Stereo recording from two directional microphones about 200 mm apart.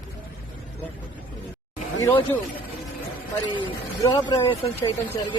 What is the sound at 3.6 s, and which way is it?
Speech, 20° left (ahead or behind).